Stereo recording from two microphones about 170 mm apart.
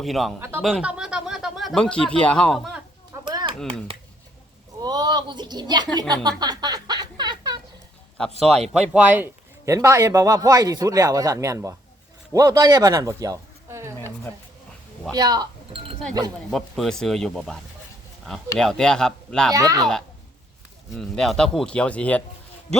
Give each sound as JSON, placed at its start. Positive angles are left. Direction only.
{"t": 0.0, "sound": "speech", "side_deg": 0}
{"t": 0.3, "sound": "speech", "side_deg": -10}
{"t": 3.1, "sound": "a sound", "side_deg": -25}
{"t": 4.8, "sound": "a sound", "side_deg": -25}
{"t": 8.9, "sound": "a man's voice", "side_deg": -5}
{"t": 15.1, "sound": "speech", "side_deg": -20}
{"t": 16.5, "sound": "speech", "side_deg": 0}
{"t": 19.5, "sound": "a man's voice", "side_deg": -20}
{"t": 20.9, "sound": "speech", "side_deg": 0}